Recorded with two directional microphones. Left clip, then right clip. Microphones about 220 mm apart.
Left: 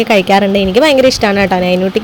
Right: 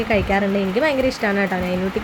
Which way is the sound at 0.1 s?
35° left (ahead or behind).